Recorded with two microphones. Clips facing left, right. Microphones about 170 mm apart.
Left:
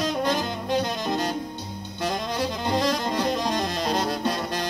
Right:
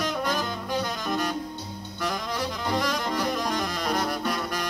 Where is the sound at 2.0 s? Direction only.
25° left (ahead or behind).